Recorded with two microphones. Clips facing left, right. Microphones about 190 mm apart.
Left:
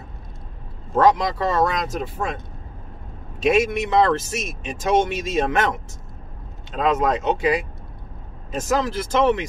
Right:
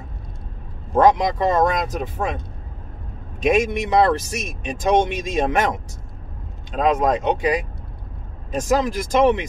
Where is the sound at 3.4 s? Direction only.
15° right (ahead or behind).